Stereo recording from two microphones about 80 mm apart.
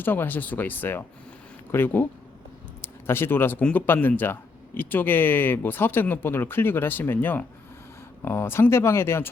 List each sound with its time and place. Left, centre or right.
0.0 s speech: left